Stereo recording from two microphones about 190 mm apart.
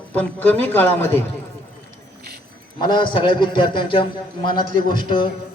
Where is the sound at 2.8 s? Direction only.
25° left (ahead or behind).